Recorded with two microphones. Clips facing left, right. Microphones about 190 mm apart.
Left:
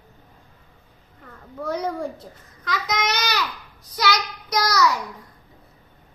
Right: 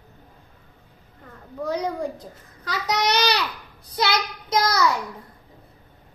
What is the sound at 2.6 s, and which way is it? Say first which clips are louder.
Babbling: right 1 dB; 35° right (ahead or behind).